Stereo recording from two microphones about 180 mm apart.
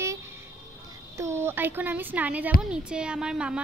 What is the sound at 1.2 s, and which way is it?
A woman's voice, 15° right (ahead or behind).